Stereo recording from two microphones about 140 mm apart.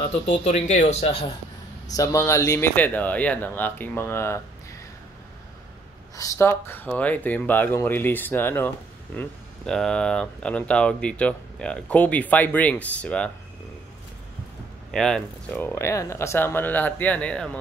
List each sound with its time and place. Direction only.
0.1 s speech: 55° left (ahead or behind)
2.0 s speech: 20° left (ahead or behind)
6.1 s speech: 25° left (ahead or behind)
14.9 s speech: 5° left (ahead or behind)
15.6 s speech: 20° left (ahead or behind)